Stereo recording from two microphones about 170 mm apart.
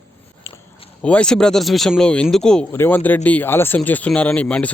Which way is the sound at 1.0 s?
5° left (ahead or behind).